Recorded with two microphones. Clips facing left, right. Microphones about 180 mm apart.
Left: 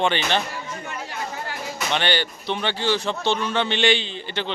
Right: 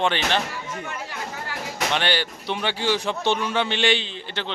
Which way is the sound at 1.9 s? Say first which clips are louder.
Left 2 dB; 5° right (ahead or behind).